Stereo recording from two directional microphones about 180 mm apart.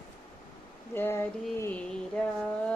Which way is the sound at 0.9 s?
10° left (ahead or behind).